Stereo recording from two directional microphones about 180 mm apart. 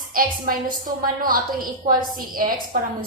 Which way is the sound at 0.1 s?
50° right (ahead or behind).